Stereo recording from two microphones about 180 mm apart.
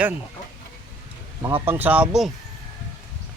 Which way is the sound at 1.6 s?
10° right (ahead or behind).